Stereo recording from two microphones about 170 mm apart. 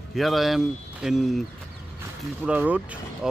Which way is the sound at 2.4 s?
10° right (ahead or behind).